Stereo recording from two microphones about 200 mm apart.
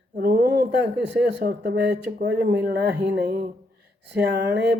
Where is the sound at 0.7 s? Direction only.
60° right (ahead or behind).